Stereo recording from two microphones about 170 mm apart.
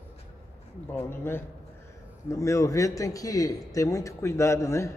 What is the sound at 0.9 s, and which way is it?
A man's voice, 15° left (ahead or behind).